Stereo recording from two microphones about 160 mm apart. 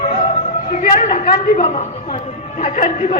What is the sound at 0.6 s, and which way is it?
A man's voice, 50° left (ahead or behind).